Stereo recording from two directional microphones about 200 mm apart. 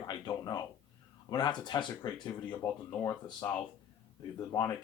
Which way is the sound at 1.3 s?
20° left (ahead or behind).